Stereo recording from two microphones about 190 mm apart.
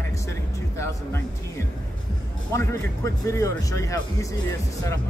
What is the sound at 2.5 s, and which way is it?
A man's voice, 15° left (ahead or behind).